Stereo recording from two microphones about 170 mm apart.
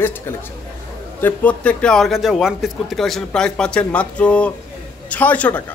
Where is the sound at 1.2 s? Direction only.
10° left (ahead or behind).